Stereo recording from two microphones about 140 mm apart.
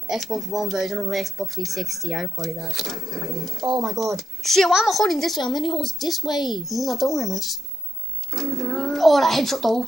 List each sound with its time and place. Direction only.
0.1 s speech: centre (ahead or behind)
5.4 s speech: 35° left (ahead or behind)
5.7 s speech: centre (ahead or behind)
6.3 s speech: 30° left (ahead or behind)
6.7 s speech: centre (ahead or behind)
8.4 s a sound: centre (ahead or behind)